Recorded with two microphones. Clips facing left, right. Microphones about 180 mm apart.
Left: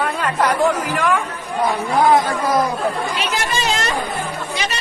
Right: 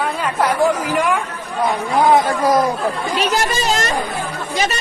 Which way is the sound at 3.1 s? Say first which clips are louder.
Right 4 dB; 40° right (ahead or behind).